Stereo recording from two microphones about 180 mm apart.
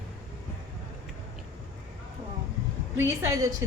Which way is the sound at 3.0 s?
15° right (ahead or behind).